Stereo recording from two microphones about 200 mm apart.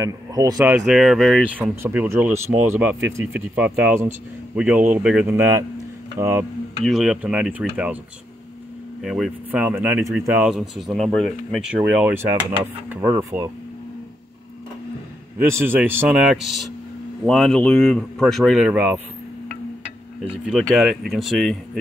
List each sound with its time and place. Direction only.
0.0 s speech: 20° right (ahead or behind)
0.7 s speech: centre (ahead or behind)
6.8 s speech: centre (ahead or behind)
9.0 s speech: centre (ahead or behind)
15.3 s speech: 10° right (ahead or behind)
20.2 s speech: centre (ahead or behind)